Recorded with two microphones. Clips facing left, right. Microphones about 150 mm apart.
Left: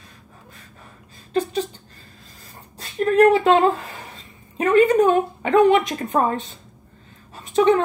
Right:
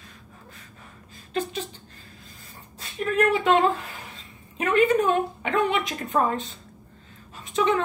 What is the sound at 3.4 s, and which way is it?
A woman's voice, 40° left (ahead or behind).